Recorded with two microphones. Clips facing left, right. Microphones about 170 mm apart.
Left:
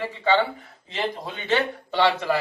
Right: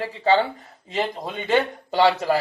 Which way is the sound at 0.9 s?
45° right (ahead or behind).